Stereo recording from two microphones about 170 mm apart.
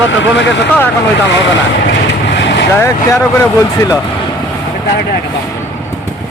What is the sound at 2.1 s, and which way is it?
Vehicle, 90° left.